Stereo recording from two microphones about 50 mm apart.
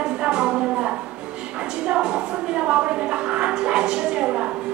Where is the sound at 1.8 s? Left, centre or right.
Centre.